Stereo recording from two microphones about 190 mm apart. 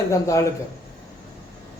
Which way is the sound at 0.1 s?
15° left (ahead or behind).